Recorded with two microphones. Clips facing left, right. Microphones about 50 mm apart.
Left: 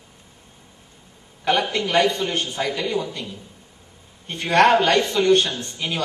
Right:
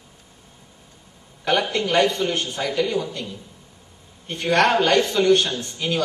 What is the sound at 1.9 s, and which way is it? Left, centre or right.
Speech, centre.